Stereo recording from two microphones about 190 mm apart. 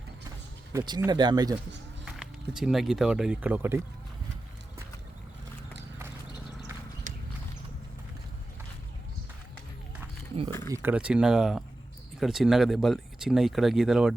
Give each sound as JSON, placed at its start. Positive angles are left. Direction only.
{"t": 0.7, "sound": "speech", "side_deg": -20}
{"t": 2.6, "sound": "speech", "side_deg": 0}
{"t": 10.8, "sound": "speech", "side_deg": -5}